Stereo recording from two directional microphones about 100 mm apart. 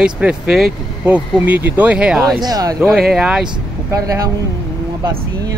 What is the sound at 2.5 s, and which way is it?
Speech, 40° right (ahead or behind).